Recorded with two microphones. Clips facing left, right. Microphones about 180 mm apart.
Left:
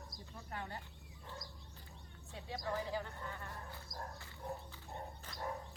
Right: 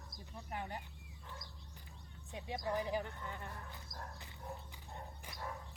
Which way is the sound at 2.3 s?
20° right (ahead or behind).